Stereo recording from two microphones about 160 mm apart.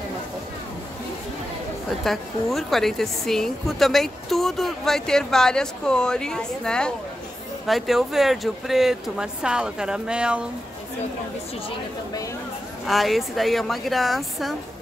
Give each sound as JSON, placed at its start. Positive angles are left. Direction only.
{"t": 2.0, "sound": "a woman's voice", "side_deg": 0}
{"t": 12.8, "sound": "a woman's voice", "side_deg": 0}